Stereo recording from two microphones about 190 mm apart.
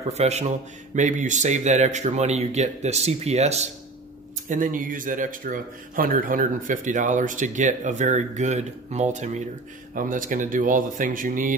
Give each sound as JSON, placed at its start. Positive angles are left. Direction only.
{"t": 0.1, "sound": "speech", "side_deg": -35}